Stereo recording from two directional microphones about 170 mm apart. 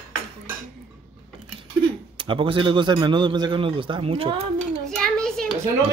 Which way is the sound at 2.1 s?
30° right (ahead or behind).